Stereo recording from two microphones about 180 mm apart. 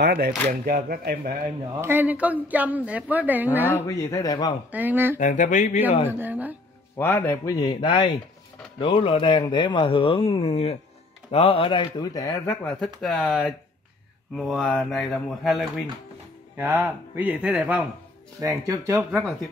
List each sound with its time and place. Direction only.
0.0 s speech: 55° right (ahead or behind)
1.8 s a woman's voice: 10° right (ahead or behind)
3.7 s speech: 15° left (ahead or behind)
4.6 s a woman's voice: 10° right (ahead or behind)
5.2 s speech: 45° left (ahead or behind)
6.0 s a woman's voice: 10° right (ahead or behind)
7.0 s speech: 10° left (ahead or behind)
12.6 s speech: centre (ahead or behind)
16.5 s a woman's voice: 10° right (ahead or behind)